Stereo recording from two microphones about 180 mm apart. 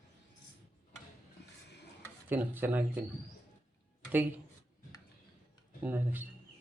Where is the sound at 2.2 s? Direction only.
10° right (ahead or behind).